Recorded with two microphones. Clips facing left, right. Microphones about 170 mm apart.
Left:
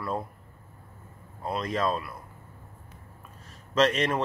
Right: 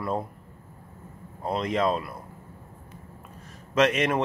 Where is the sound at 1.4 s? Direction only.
20° right (ahead or behind).